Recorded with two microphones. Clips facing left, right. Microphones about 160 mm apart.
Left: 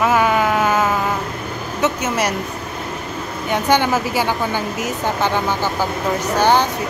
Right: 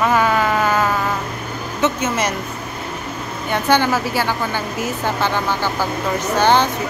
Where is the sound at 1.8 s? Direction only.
10° left (ahead or behind).